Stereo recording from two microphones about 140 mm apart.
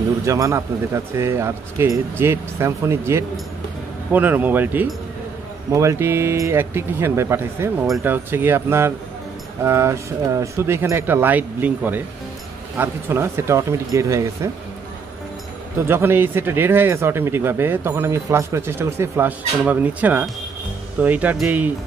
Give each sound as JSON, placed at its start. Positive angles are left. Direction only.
{"t": 0.2, "sound": "speech", "side_deg": -20}
{"t": 15.9, "sound": "speech", "side_deg": -15}